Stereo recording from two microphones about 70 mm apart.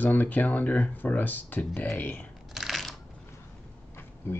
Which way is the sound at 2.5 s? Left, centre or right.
Centre.